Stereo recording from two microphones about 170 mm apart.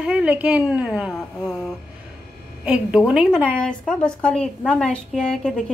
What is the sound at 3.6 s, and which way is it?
A woman's voice, 5° left (ahead or behind).